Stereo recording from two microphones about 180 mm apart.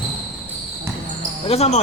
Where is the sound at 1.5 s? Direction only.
35° left (ahead or behind).